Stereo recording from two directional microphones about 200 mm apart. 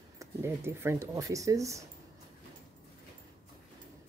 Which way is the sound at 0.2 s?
15° right (ahead or behind).